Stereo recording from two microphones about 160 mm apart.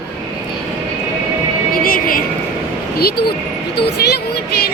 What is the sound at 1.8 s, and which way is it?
Speech, 60° left (ahead or behind).